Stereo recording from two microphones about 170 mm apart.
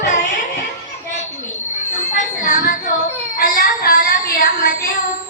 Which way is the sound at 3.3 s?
55° left (ahead or behind).